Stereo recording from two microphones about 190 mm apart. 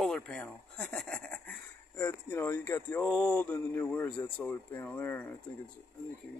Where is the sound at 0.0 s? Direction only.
5° left (ahead or behind).